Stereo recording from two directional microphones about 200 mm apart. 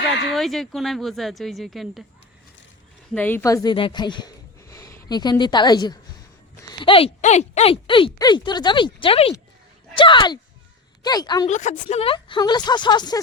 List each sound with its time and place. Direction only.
0.3 s speech: centre (ahead or behind)
3.1 s speech: 10° left (ahead or behind)
11.4 s speech: 35° left (ahead or behind); by 13.1 s 20° left (ahead or behind)